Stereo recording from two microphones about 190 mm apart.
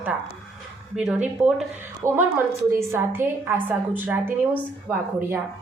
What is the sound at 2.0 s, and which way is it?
A woman's voice, 15° right (ahead or behind).